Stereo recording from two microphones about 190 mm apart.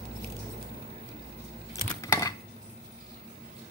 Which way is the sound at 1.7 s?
15° left (ahead or behind).